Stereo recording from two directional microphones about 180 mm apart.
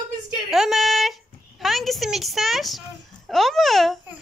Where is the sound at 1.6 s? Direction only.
Centre (ahead or behind).